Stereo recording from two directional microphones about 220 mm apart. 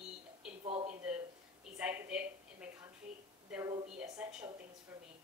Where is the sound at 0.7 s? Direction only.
30° right (ahead or behind).